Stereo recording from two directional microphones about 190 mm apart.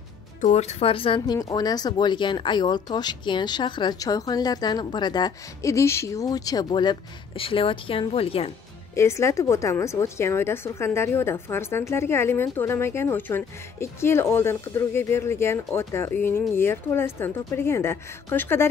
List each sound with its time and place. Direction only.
0.4 s speech: 35° left (ahead or behind)
8.9 s a woman's voice: 15° left (ahead or behind)